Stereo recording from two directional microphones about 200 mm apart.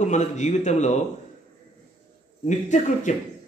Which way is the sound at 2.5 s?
35° left (ahead or behind).